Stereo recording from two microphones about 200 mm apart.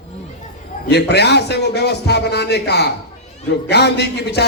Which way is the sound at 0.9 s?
55° left (ahead or behind).